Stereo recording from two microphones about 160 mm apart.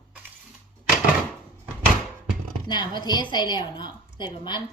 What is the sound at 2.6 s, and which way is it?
A woman's voice, 25° left (ahead or behind).